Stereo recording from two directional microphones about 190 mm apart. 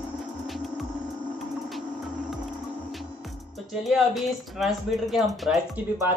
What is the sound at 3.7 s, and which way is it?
Speech, centre (ahead or behind).